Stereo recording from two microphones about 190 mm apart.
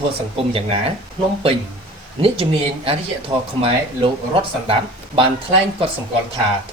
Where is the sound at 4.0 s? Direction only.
30° right (ahead or behind).